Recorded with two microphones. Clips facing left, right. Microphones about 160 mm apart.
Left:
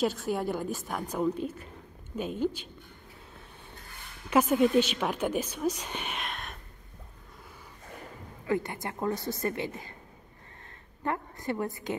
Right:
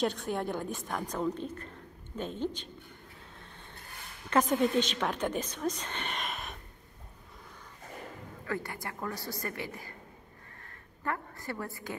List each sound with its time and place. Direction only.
0.0 s a woman's voice: 5° left (ahead or behind)
4.3 s a woman's voice: 5° left (ahead or behind)
8.5 s a woman's voice: 20° left (ahead or behind)
11.1 s a woman's voice: 20° left (ahead or behind)